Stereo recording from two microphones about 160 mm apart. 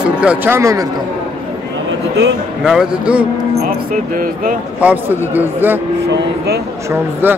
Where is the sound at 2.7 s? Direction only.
5° right (ahead or behind).